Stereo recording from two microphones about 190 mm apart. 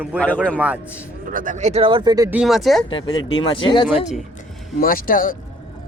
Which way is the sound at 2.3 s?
Centre (ahead or behind).